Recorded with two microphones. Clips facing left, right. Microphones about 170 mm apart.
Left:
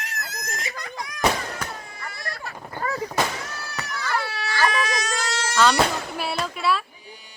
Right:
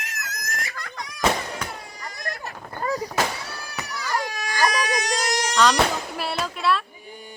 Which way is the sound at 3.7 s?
15° right (ahead or behind).